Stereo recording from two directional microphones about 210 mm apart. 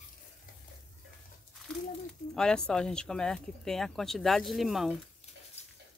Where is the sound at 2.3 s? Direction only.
5° left (ahead or behind).